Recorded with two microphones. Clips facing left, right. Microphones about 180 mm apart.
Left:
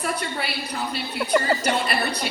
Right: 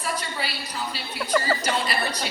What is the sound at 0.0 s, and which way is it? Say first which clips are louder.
A woman's voice: left 3 dB; 55° left (ahead or behind).